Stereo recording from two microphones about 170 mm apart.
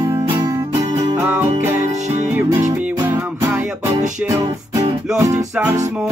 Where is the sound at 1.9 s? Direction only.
45° right (ahead or behind).